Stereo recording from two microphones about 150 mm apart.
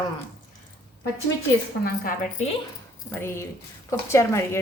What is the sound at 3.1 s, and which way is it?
A woman's voice, 15° left (ahead or behind).